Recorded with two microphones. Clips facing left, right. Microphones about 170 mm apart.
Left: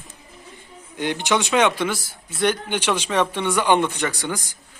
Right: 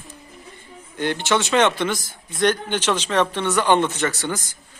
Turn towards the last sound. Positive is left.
turn(degrees=10)  # may be behind; listen again after turning